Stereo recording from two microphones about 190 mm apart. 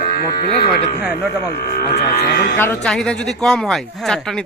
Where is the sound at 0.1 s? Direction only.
55° left (ahead or behind).